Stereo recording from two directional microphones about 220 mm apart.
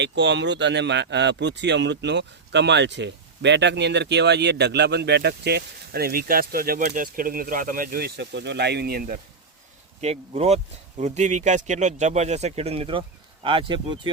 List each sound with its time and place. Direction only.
0.0 s speech: 55° right (ahead or behind)
10.0 s speech: 30° right (ahead or behind)